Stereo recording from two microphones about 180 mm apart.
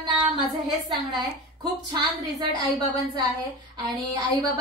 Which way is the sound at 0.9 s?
25° right (ahead or behind).